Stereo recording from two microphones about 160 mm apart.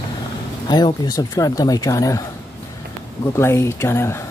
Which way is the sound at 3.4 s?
15° left (ahead or behind).